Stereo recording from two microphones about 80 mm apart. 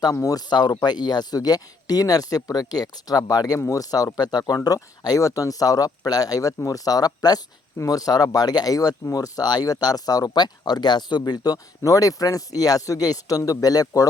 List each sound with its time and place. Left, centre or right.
0.0 s speech: left
0.5 s speech: left
11.3 s speech: left